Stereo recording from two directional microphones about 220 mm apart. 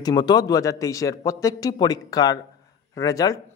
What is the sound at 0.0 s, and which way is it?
Speech, 20° left (ahead or behind).